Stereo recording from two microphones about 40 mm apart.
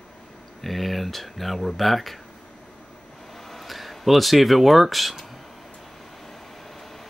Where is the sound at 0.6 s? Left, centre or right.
Centre.